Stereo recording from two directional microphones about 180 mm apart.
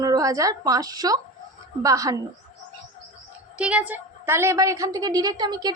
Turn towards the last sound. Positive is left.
turn(degrees=-20)  # may be behind; listen again after turning